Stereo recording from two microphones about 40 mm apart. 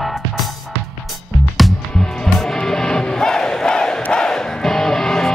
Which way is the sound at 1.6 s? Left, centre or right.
Centre.